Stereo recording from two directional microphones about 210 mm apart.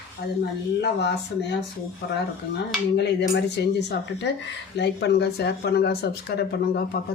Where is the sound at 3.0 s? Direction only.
55° left (ahead or behind).